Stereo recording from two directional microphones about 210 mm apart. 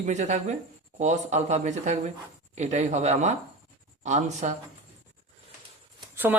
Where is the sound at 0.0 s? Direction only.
35° right (ahead or behind).